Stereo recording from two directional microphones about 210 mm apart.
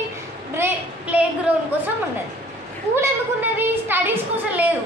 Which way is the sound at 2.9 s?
10° right (ahead or behind).